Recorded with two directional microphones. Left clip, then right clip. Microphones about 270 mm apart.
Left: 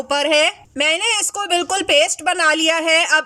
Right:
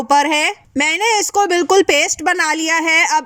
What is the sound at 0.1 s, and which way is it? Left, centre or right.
A man's voice, right.